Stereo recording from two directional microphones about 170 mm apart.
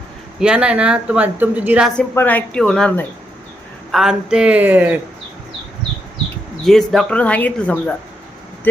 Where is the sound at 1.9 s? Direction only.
10° left (ahead or behind); by 5.0 s 10° right (ahead or behind).